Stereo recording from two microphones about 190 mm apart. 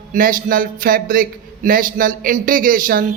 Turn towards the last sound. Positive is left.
turn(degrees=-45)  # may be behind; listen again after turning